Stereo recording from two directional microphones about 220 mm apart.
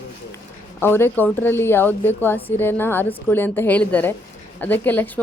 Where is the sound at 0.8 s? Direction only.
10° left (ahead or behind).